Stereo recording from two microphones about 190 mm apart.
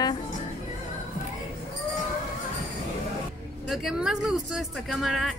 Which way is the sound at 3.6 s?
Centre (ahead or behind).